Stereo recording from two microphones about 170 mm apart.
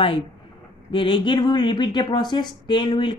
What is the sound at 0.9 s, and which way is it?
Speech, 30° left (ahead or behind).